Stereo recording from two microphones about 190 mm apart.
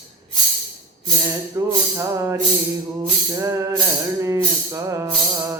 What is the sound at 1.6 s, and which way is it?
Music, 15° right (ahead or behind).